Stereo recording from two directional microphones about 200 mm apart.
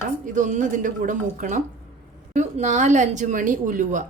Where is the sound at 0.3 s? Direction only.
40° right (ahead or behind).